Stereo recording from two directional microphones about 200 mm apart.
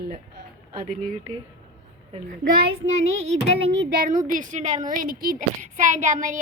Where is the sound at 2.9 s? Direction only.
30° right (ahead or behind).